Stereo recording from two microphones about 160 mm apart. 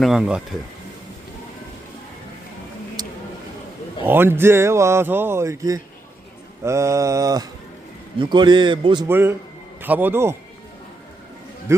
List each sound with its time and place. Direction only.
0.0 s speech: 5° right (ahead or behind)
4.0 s a man's voice: 15° right (ahead or behind); by 9.0 s 30° right (ahead or behind)
9.0 s speech: 15° right (ahead or behind)
11.7 s speech: 15° right (ahead or behind)